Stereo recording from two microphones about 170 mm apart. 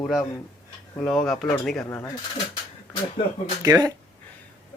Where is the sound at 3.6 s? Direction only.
20° right (ahead or behind).